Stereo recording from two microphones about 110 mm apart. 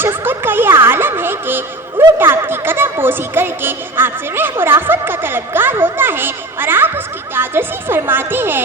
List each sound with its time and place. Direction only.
0.0 s music: 20° right (ahead or behind)